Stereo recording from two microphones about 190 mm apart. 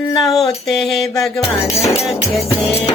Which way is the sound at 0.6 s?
Centre (ahead or behind).